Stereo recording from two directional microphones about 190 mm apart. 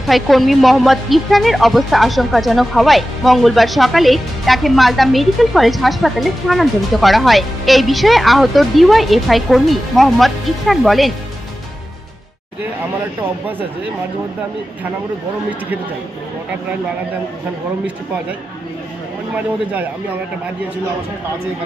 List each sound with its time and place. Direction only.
0.0 s speech: centre (ahead or behind)